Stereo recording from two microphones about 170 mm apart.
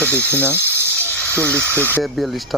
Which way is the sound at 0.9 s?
10° left (ahead or behind).